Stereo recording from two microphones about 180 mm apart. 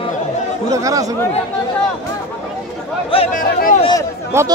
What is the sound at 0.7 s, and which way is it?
Speech, 20° right (ahead or behind).